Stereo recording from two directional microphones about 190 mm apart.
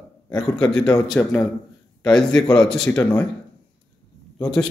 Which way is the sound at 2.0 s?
5° left (ahead or behind).